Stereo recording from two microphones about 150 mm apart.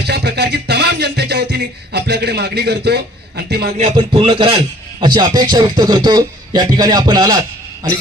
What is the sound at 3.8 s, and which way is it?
A man's voice, 35° right (ahead or behind).